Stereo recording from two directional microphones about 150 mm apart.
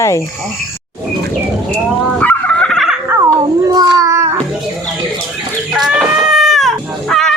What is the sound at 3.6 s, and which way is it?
Cat, 25° right (ahead or behind).